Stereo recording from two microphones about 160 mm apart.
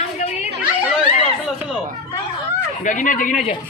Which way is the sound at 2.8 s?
55° left (ahead or behind).